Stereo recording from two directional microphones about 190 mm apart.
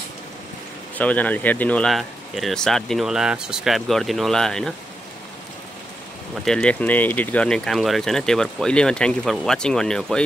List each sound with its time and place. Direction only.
0.9 s speech: 10° left (ahead or behind)
6.4 s speech: 5° left (ahead or behind)